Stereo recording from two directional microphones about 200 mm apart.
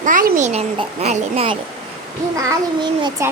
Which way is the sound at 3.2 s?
15° right (ahead or behind).